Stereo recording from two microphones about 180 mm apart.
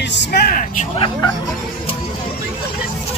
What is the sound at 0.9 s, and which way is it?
Speech, 30° left (ahead or behind).